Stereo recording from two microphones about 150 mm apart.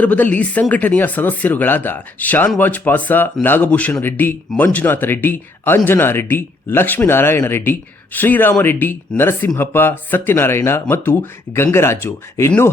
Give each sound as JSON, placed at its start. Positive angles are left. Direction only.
{"t": 0.0, "sound": "a man's voice", "side_deg": 10}